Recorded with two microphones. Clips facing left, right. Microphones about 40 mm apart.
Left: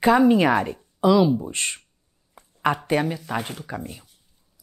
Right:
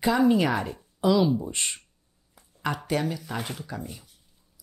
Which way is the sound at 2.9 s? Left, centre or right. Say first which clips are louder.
Left 5 dB; left.